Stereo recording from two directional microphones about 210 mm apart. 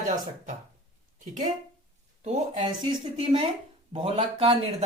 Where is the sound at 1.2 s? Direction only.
35° right (ahead or behind).